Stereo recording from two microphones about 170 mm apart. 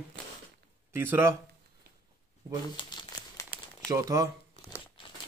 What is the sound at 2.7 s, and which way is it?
Crumpling, 25° left (ahead or behind).